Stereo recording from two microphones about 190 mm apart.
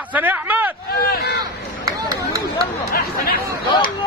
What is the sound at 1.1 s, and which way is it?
Speech, 55° left (ahead or behind).